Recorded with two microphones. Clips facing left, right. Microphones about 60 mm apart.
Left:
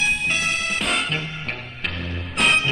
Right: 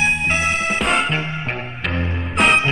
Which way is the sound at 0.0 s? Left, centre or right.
Right.